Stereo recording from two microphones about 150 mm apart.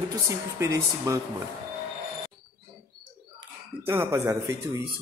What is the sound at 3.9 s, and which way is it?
Speech, 15° right (ahead or behind).